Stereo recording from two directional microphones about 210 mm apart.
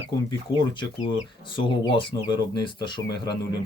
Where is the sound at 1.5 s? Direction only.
25° left (ahead or behind).